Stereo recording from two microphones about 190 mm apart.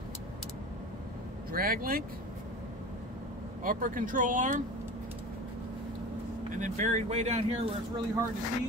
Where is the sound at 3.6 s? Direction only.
45° right (ahead or behind).